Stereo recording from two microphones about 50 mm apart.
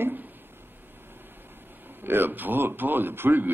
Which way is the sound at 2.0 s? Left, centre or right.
Right.